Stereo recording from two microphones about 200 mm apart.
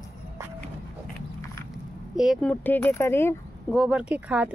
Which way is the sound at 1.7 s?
Centre (ahead or behind).